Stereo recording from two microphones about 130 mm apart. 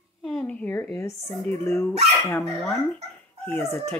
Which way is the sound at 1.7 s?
15° left (ahead or behind).